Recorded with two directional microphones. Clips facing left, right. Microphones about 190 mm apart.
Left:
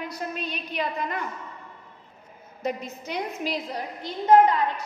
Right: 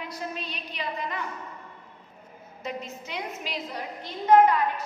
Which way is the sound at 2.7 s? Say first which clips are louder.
Left 5 dB; 45° left (ahead or behind).